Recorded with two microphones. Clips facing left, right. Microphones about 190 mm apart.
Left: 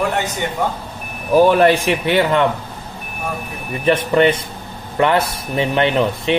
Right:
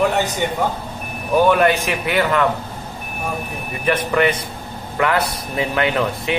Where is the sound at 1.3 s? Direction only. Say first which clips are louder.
Left 3 dB; 35° left (ahead or behind).